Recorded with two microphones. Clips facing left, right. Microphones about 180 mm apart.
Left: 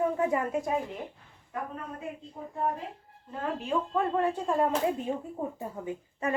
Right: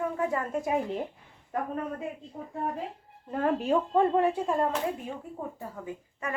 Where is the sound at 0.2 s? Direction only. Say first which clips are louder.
Left 2 dB; 20° left (ahead or behind).